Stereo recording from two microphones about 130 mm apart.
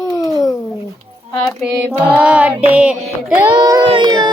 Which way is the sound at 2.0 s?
10° right (ahead or behind).